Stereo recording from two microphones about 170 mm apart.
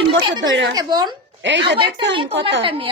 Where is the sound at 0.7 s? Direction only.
25° right (ahead or behind).